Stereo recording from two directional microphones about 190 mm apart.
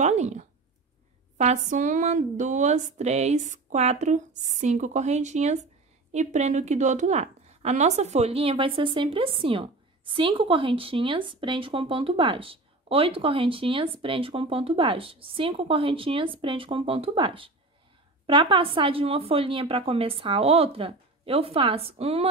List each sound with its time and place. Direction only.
0.0 s a woman's voice: 35° right (ahead or behind)